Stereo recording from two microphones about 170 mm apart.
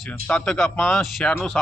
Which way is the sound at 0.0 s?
5° left (ahead or behind).